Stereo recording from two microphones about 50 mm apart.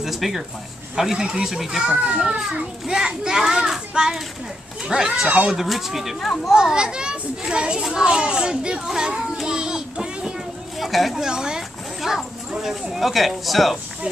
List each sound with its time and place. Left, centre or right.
0.0 s a child's voice: centre
1.9 s a child's voice: centre
5.3 s speech: right
5.6 s a child's voice: centre
10.8 s a woman's voice: centre
11.1 s a child's voice: centre